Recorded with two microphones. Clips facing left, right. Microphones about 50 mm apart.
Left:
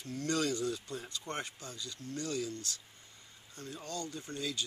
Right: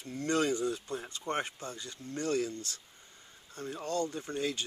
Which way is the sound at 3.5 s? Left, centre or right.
Right.